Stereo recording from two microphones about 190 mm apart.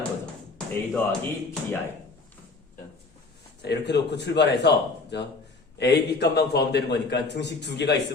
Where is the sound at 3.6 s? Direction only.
60° left (ahead or behind).